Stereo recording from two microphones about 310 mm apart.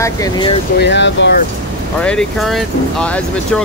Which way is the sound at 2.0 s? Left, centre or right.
Centre.